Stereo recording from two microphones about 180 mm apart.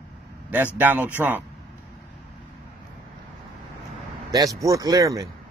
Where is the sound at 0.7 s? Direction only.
10° right (ahead or behind).